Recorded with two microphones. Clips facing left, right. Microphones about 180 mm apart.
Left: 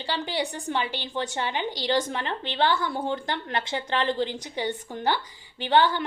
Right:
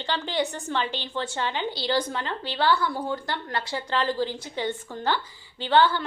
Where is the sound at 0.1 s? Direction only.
10° left (ahead or behind).